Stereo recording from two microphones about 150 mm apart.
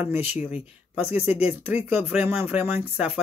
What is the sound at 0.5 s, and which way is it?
Speech, 45° left (ahead or behind).